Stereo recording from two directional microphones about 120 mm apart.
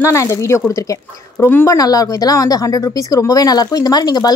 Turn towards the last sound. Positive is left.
turn(degrees=35)  # may be behind; listen again after turning